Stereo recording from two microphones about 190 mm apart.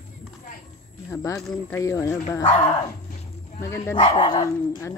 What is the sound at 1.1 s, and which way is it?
Speech, 15° left (ahead or behind).